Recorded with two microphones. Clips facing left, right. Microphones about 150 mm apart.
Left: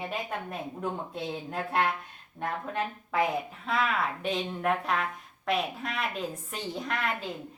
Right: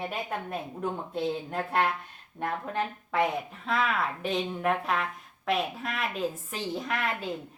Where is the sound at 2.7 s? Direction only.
Centre (ahead or behind).